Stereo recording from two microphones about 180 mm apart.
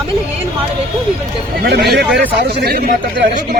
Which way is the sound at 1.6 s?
60° right (ahead or behind).